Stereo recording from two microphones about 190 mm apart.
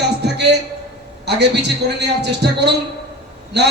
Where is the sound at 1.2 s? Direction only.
60° right (ahead or behind).